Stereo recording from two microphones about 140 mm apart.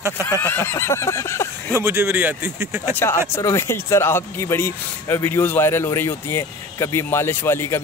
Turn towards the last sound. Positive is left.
turn(degrees=15)  # may be behind; listen again after turning